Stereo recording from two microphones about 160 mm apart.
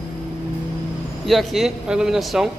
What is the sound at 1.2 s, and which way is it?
Speech, centre (ahead or behind).